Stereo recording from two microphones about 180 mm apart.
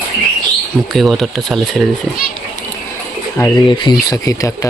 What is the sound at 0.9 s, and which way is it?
Speech, centre (ahead or behind).